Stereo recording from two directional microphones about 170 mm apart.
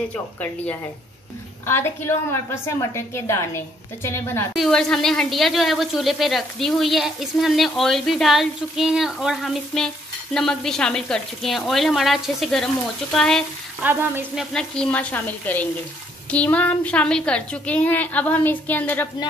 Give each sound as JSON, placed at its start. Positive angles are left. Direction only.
{"t": 0.1, "sound": "a woman's voice", "side_deg": 10}
{"t": 4.6, "sound": "speech", "side_deg": 5}
{"t": 13.8, "sound": "a woman's voice", "side_deg": -10}